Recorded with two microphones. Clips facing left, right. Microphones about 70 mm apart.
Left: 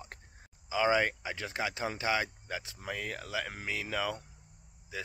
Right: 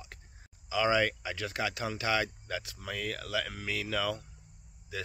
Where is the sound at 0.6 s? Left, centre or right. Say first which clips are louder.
Even; left.